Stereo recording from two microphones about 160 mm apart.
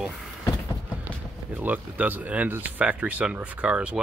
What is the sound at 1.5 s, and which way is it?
Speech, 10° right (ahead or behind).